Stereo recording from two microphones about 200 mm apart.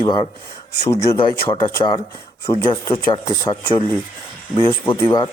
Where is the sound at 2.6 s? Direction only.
25° left (ahead or behind).